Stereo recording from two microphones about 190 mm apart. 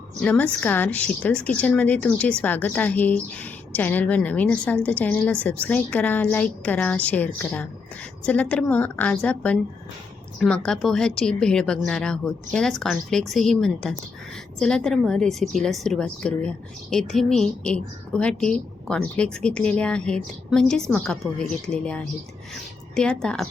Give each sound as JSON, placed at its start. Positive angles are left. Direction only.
{"t": 0.2, "sound": "a woman's voice", "side_deg": 5}